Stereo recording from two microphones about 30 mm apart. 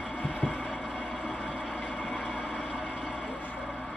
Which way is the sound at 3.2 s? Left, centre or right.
Left.